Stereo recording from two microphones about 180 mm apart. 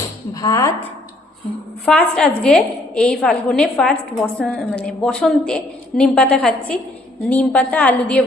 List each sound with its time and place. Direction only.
0.3 s a woman's voice: 20° left (ahead or behind)
1.8 s a woman's voice: 5° left (ahead or behind)